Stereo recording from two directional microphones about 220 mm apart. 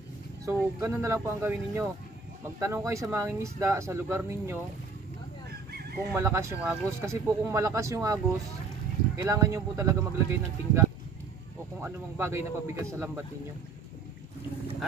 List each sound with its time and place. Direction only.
0.5 s speech: 15° right (ahead or behind)
5.5 s chicken: 45° right (ahead or behind)
6.1 s speech: 10° right (ahead or behind)